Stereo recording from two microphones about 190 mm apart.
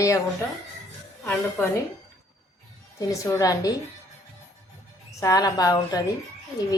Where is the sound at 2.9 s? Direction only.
15° left (ahead or behind).